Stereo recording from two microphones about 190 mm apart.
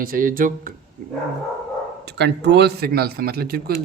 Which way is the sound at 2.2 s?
65° right (ahead or behind).